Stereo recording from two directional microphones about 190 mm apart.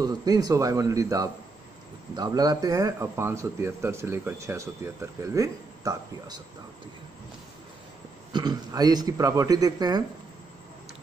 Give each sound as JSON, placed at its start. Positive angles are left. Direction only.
{"t": 0.0, "sound": "a man's voice", "side_deg": -20}
{"t": 8.3, "sound": "a man's voice", "side_deg": -20}